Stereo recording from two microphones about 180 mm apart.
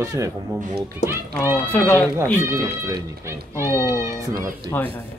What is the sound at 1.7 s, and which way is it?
Speech, 10° left (ahead or behind).